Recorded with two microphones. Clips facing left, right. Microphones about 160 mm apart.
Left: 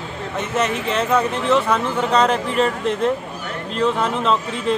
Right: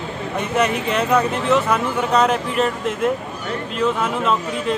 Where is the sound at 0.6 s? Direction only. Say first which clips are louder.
Right 1 dB; 25° left (ahead or behind).